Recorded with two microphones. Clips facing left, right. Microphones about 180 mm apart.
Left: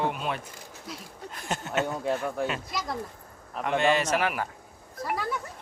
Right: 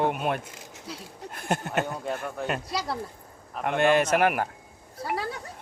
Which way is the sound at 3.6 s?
55° right (ahead or behind).